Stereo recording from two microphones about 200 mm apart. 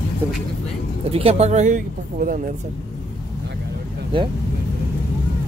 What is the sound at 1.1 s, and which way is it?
Speech, 30° right (ahead or behind).